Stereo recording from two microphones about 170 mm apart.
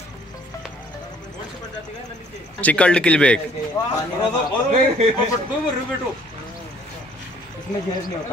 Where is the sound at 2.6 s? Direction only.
10° left (ahead or behind).